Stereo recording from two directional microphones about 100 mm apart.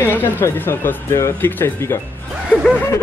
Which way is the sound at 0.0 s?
20° left (ahead or behind).